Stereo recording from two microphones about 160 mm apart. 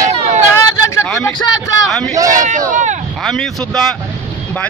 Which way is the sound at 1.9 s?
5° left (ahead or behind).